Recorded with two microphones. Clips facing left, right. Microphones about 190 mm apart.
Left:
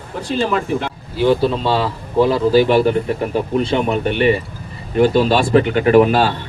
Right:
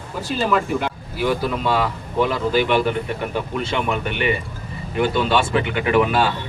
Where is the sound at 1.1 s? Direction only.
30° left (ahead or behind).